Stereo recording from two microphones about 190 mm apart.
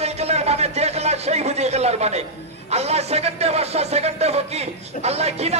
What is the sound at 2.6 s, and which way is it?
A man's voice, 35° right (ahead or behind).